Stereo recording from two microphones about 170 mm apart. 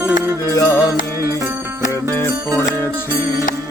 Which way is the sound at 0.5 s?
20° left (ahead or behind).